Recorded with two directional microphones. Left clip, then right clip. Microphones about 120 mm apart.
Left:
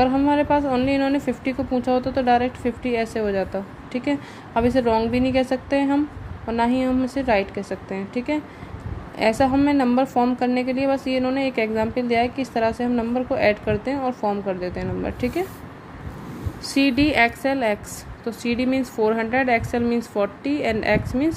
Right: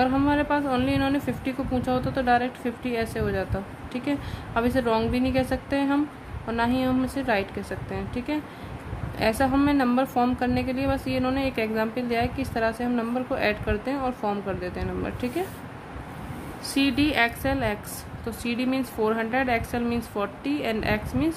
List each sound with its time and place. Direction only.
0.0 s a woman's voice: 20° left (ahead or behind)
16.6 s a woman's voice: 30° left (ahead or behind)